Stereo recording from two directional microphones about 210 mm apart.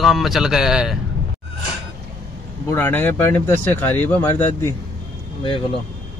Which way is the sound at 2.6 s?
10° left (ahead or behind).